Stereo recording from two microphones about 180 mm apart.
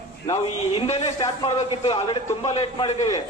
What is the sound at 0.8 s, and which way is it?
Speech, 30° left (ahead or behind).